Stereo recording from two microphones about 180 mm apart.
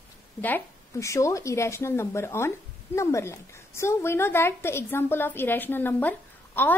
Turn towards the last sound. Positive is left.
turn(degrees=10)  # may be behind; listen again after turning